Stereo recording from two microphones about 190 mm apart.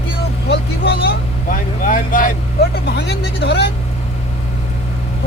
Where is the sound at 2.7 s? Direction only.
60° left (ahead or behind).